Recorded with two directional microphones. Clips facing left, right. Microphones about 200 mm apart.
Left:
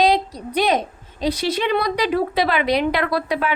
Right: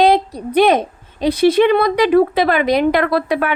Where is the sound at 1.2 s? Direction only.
55° right (ahead or behind).